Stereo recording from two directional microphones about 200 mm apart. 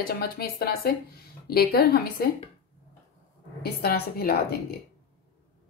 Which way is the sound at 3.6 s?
50° left (ahead or behind).